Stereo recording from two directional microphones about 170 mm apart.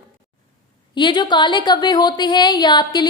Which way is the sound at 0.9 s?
25° left (ahead or behind).